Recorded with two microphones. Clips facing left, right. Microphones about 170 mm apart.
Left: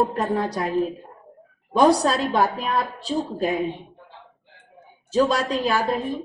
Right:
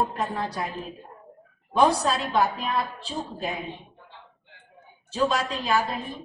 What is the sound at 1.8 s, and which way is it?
Speech, 40° left (ahead or behind).